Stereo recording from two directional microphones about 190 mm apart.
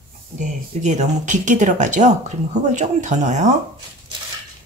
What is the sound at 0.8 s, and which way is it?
Speech, 40° right (ahead or behind).